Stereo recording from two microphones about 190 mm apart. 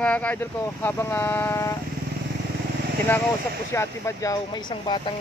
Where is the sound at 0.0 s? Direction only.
5° left (ahead or behind).